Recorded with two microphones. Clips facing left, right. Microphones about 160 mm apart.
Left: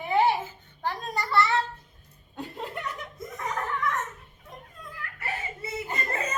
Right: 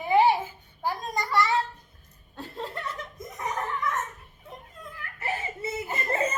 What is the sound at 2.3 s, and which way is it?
Chuckle, 15° left (ahead or behind).